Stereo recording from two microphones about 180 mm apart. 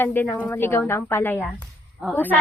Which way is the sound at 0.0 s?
10° left (ahead or behind).